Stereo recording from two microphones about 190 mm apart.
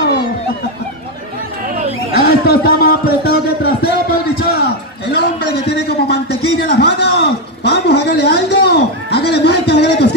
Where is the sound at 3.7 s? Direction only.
55° left (ahead or behind).